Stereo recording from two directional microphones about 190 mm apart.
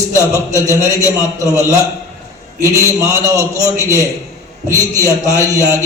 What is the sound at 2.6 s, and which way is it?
A man's voice, 15° right (ahead or behind).